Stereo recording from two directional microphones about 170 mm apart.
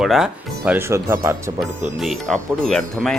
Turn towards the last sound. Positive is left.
turn(degrees=5)  # may be behind; listen again after turning